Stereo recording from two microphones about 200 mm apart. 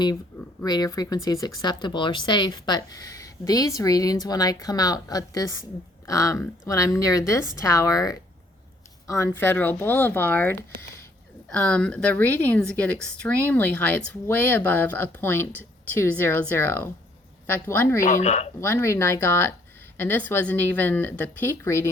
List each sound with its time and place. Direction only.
0.6 s a woman's voice: 20° left (ahead or behind)
18.0 s speech: 35° left (ahead or behind)
18.6 s a woman's voice: 10° left (ahead or behind)